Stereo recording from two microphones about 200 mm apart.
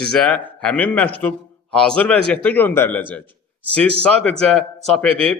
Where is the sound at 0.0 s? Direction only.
5° left (ahead or behind).